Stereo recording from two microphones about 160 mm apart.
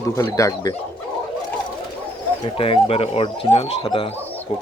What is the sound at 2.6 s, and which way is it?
Speech, 35° left (ahead or behind).